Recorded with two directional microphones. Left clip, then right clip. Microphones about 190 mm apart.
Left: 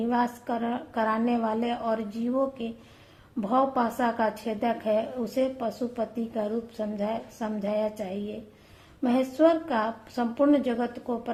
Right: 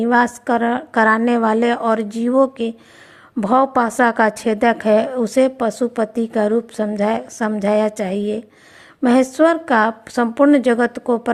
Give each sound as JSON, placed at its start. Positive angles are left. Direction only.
{"t": 0.0, "sound": "a woman's voice", "side_deg": -45}